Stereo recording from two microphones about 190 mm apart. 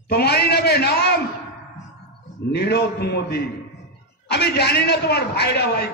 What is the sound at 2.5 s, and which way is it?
A man's voice, 60° left (ahead or behind).